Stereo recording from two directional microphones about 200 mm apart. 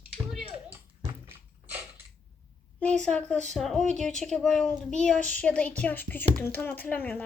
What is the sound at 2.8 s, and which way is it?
A woman's voice, 5° left (ahead or behind).